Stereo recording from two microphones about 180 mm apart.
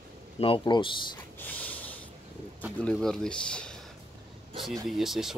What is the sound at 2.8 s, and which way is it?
Speech, 5° left (ahead or behind).